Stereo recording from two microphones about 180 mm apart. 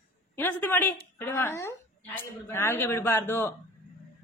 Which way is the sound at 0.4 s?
10° left (ahead or behind).